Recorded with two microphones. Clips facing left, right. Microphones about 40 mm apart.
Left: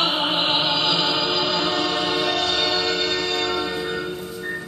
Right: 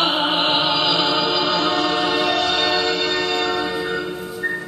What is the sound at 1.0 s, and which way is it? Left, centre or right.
Music, centre.